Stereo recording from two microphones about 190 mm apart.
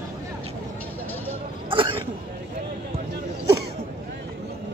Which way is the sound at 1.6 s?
25° right (ahead or behind).